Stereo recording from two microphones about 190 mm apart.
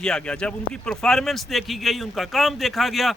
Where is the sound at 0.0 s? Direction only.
5° left (ahead or behind).